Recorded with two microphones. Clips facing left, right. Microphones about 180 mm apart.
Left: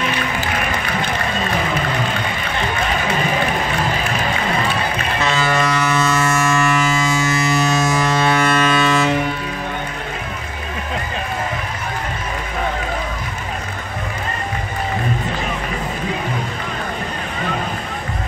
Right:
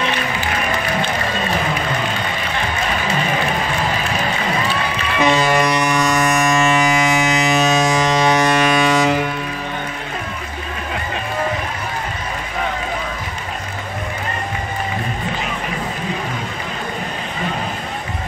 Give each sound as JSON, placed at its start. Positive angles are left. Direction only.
{"t": 5.2, "sound": "music", "side_deg": -15}